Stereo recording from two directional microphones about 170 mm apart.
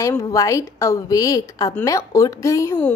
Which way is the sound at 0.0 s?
20° left (ahead or behind).